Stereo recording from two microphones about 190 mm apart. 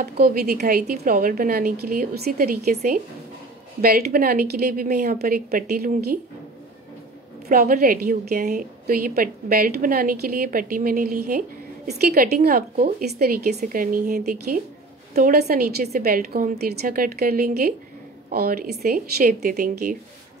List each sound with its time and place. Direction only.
0.0 s a woman's voice: 55° right (ahead or behind)
7.4 s a woman's voice: 50° right (ahead or behind)